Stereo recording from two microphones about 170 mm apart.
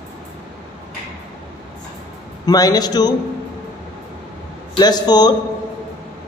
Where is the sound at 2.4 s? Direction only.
20° left (ahead or behind).